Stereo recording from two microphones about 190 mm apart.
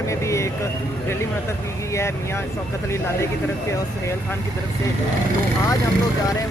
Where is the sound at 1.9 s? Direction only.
15° left (ahead or behind).